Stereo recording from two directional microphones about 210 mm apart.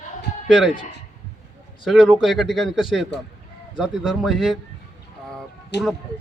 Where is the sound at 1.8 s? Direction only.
Centre (ahead or behind).